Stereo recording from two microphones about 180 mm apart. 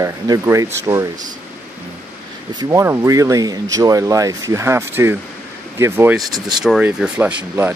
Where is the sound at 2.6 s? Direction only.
15° right (ahead or behind).